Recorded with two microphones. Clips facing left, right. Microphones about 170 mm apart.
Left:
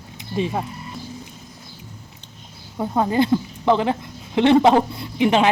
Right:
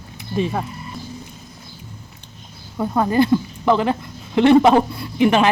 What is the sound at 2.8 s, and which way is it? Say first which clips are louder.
A woman's voice: right 2 dB; 20° left (ahead or behind).